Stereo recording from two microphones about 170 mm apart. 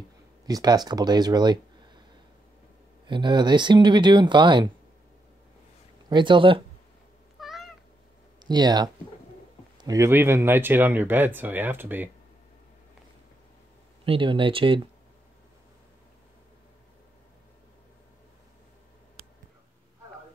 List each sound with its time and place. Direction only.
0.5 s speech: 20° right (ahead or behind)
3.1 s speech: 25° right (ahead or behind)
6.0 s speech: 25° right (ahead or behind)
7.3 s cat: centre (ahead or behind)
8.4 s speech: 25° right (ahead or behind)
14.0 s speech: 30° right (ahead or behind)